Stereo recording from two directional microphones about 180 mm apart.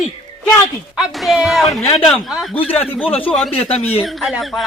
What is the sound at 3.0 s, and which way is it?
Speech, 30° left (ahead or behind).